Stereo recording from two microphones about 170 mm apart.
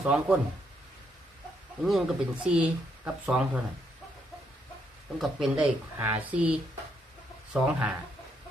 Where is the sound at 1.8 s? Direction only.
5° right (ahead or behind).